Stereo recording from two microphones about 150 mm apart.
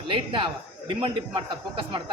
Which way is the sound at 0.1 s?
35° right (ahead or behind).